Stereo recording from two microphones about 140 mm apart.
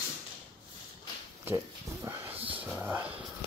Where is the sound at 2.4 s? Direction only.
40° right (ahead or behind).